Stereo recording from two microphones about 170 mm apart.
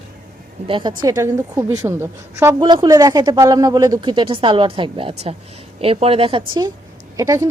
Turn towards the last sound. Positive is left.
turn(degrees=-20)  # may be behind; listen again after turning